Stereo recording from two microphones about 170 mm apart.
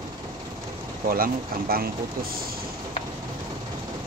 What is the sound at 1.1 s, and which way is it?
Speech, 60° right (ahead or behind).